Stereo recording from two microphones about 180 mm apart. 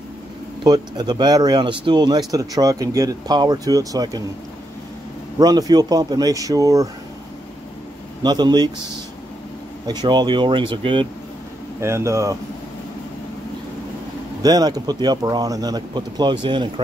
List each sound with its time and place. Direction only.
0.7 s speech: 25° right (ahead or behind)
5.4 s speech: 20° right (ahead or behind)
8.2 s speech: 25° right (ahead or behind)
9.8 s speech: 25° right (ahead or behind)
11.8 s speech: 15° right (ahead or behind)
14.4 s speech: 20° right (ahead or behind)